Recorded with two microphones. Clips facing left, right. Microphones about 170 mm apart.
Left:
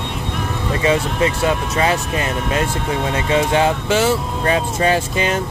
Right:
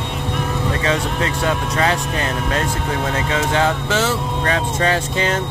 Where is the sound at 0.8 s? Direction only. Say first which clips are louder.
Left 7 dB; 10° left (ahead or behind).